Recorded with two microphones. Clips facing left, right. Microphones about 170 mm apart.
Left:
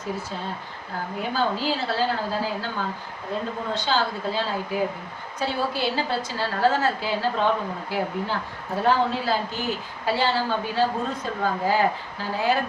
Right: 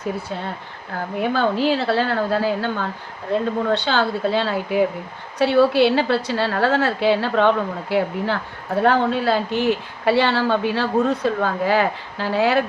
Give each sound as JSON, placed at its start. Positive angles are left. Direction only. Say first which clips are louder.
{"t": 1.2, "sound": "a woman's voice", "louder": "right 6 dB", "side_deg": -65}